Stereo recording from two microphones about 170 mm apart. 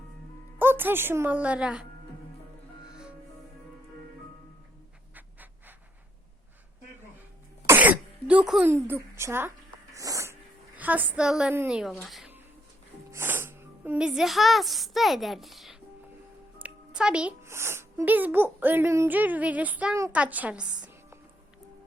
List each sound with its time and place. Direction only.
0.6 s speech: 10° right (ahead or behind)
2.9 s music: 5° right (ahead or behind)
5.1 s pant: 10° right (ahead or behind)
7.7 s cough: 10° right (ahead or behind)
8.7 s speech: 15° right (ahead or behind)
9.9 s cat: 20° right (ahead or behind)
10.8 s speech: 10° right (ahead or behind)
13.1 s a child's voice: 15° right (ahead or behind)